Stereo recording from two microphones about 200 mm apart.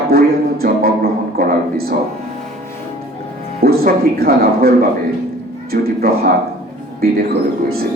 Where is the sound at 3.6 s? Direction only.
50° right (ahead or behind).